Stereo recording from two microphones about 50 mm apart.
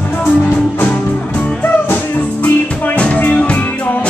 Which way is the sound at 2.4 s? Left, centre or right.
Left.